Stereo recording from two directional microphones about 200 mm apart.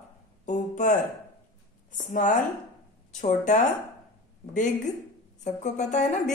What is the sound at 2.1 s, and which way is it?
A woman's voice, 40° left (ahead or behind).